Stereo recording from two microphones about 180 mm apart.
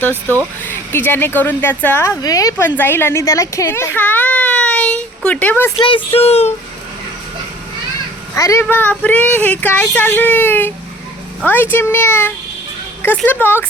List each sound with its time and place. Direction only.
0.1 s speech: 15° right (ahead or behind)
0.6 s a woman's voice: 10° left (ahead or behind)
5.7 s speech: 30° left (ahead or behind)
8.4 s speech: 15° left (ahead or behind)